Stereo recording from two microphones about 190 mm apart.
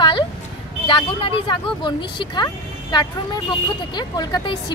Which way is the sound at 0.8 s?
25° left (ahead or behind).